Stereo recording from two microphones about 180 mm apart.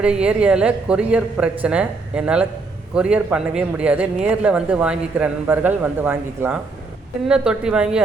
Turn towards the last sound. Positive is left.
turn(degrees=-5)  # may be behind; listen again after turning